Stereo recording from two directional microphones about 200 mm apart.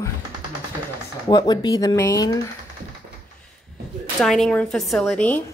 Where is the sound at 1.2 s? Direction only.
20° left (ahead or behind).